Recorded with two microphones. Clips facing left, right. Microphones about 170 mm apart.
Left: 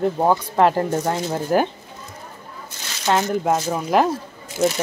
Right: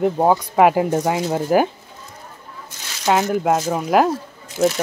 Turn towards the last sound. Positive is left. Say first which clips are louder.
# right 2 dB
turn(degrees=0)  # may be behind; listen again after turning